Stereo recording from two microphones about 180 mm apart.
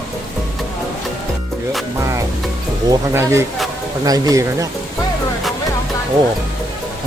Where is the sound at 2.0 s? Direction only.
15° right (ahead or behind).